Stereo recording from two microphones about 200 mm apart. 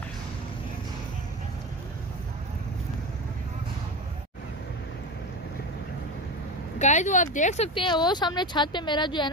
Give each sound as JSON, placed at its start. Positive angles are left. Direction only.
{"t": 6.8, "sound": "speech", "side_deg": 35}